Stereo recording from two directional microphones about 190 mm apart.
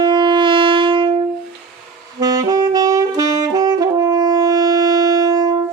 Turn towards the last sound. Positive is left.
turn(degrees=-20)  # may be behind; listen again after turning